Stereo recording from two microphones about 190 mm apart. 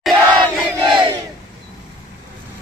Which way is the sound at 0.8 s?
25° right (ahead or behind).